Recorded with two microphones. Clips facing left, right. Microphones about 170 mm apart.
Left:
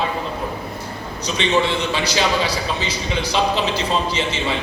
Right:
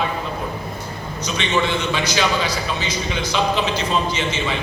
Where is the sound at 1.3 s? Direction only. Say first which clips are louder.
Left 2 dB; 30° left (ahead or behind).